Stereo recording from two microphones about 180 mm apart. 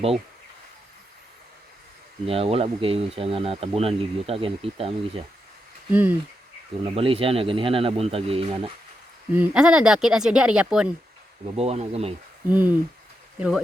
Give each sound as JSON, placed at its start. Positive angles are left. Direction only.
{"t": 2.2, "sound": "speech", "side_deg": -30}
{"t": 5.9, "sound": "speech", "side_deg": -10}
{"t": 6.8, "sound": "speech", "side_deg": -30}
{"t": 9.3, "sound": "speech", "side_deg": -10}
{"t": 11.4, "sound": "speech", "side_deg": -35}
{"t": 12.5, "sound": "speech", "side_deg": -10}